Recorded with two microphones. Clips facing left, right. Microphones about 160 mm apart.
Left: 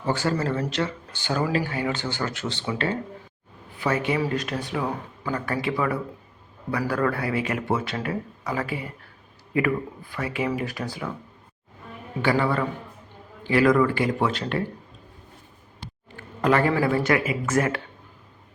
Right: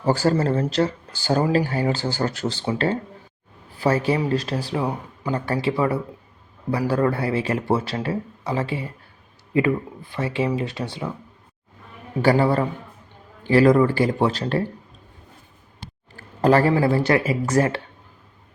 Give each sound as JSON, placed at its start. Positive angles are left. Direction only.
{"t": 0.0, "sound": "speech", "side_deg": -35}
{"t": 12.2, "sound": "speech", "side_deg": -35}
{"t": 16.1, "sound": "a sound", "side_deg": -35}
{"t": 16.8, "sound": "speech", "side_deg": -30}